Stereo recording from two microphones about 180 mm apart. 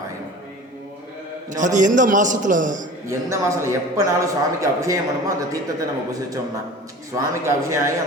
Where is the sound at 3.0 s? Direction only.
15° right (ahead or behind).